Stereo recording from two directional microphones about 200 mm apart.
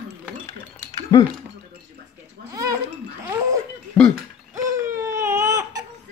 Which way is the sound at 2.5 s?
15° right (ahead or behind).